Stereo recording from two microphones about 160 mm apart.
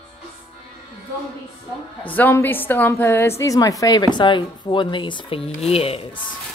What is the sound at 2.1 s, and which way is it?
A woman's voice, 10° left (ahead or behind).